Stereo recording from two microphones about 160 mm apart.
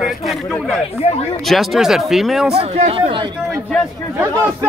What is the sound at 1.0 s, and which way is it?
Speech, 45° left (ahead or behind).